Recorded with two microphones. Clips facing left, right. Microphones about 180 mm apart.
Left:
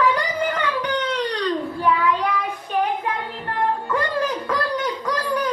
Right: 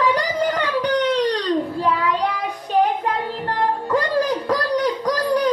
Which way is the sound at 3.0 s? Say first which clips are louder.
Right 4 dB; 35° right (ahead or behind).